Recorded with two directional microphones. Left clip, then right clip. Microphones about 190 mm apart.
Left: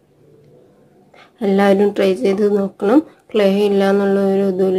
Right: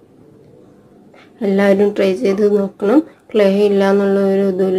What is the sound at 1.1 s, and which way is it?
Speech, 20° left (ahead or behind).